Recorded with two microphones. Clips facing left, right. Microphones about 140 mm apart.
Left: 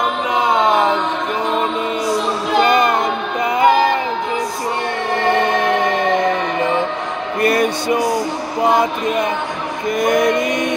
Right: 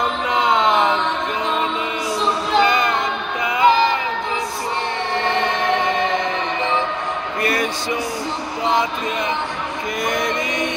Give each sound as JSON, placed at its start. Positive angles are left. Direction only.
{"t": 2.6, "sound": "music", "side_deg": 50}
{"t": 7.4, "sound": "music", "side_deg": 50}